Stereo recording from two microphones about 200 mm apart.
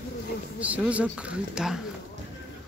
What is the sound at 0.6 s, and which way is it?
Speech, 5° right (ahead or behind).